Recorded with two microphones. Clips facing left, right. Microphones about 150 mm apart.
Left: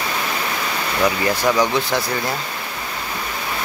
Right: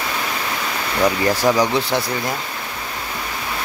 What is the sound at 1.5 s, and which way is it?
Speech, 25° right (ahead or behind).